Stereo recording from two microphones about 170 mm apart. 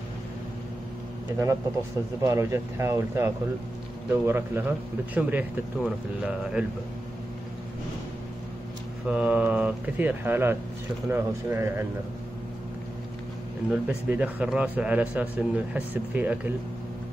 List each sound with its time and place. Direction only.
2.2 s a man's voice: 15° right (ahead or behind)
9.1 s a man's voice: 10° right (ahead or behind)
13.7 s a man's voice: 10° right (ahead or behind)